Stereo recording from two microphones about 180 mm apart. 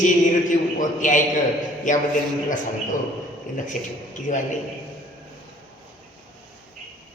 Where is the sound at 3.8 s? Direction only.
50° left (ahead or behind).